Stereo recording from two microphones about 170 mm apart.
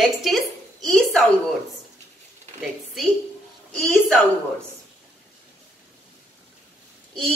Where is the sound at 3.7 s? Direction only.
5° left (ahead or behind).